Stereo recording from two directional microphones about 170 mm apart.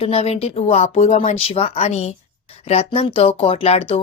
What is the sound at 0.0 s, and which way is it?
Speech, 35° left (ahead or behind).